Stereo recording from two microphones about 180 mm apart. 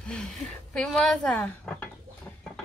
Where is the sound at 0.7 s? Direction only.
5° left (ahead or behind).